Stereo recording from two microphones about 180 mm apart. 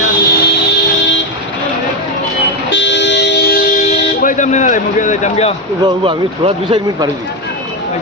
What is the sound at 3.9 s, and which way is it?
Speech, 45° left (ahead or behind).